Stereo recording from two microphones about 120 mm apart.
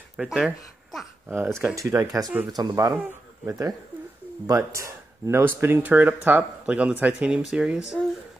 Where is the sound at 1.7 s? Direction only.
30° right (ahead or behind).